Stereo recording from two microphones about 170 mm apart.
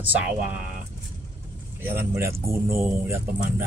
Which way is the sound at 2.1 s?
15° right (ahead or behind).